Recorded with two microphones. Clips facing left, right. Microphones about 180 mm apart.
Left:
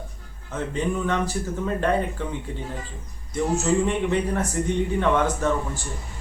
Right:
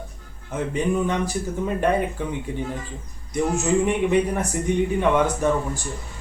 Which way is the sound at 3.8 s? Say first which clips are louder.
Right 3 dB; 15° right (ahead or behind).